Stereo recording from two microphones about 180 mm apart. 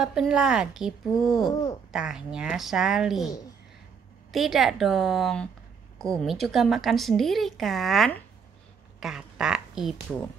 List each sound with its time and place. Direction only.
0.0 s a woman's voice: 5° right (ahead or behind)
1.5 s speech: 20° left (ahead or behind)
1.9 s a woman's voice: 5° right (ahead or behind)
4.3 s a woman's voice: centre (ahead or behind)